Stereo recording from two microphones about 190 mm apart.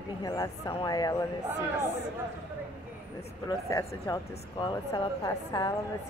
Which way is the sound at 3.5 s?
15° left (ahead or behind).